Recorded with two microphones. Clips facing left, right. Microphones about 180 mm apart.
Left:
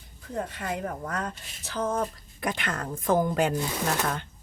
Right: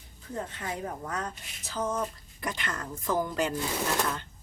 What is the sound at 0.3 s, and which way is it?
A woman's voice, 60° left (ahead or behind).